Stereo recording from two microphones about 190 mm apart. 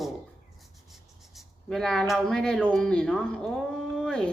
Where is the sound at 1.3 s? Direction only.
Centre (ahead or behind).